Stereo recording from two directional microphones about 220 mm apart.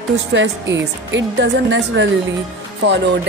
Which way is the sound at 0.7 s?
55° right (ahead or behind).